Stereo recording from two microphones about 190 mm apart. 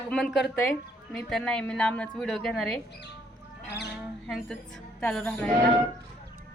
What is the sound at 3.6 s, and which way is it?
Speech, 60° left (ahead or behind).